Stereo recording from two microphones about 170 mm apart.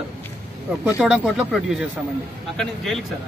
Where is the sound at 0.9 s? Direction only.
5° right (ahead or behind).